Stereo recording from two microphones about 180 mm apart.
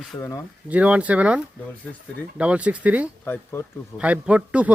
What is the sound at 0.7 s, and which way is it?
Speech, 5° right (ahead or behind).